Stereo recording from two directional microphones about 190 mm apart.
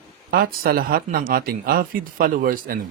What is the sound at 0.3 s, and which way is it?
Speech, 55° right (ahead or behind).